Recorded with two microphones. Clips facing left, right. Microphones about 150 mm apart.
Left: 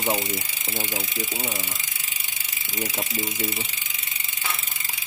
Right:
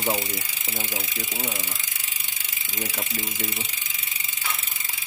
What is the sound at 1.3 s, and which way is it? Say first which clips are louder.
Speech: left 1 dB; 5° left (ahead or behind).